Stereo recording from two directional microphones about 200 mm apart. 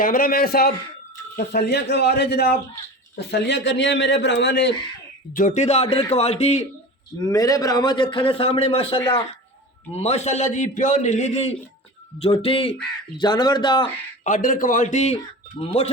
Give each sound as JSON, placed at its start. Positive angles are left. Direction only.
{"t": 0.0, "sound": "a man's voice", "side_deg": 45}
{"t": 5.3, "sound": "a man's voice", "side_deg": 40}
{"t": 7.3, "sound": "a man's voice", "side_deg": 15}
{"t": 14.3, "sound": "a man's voice", "side_deg": 40}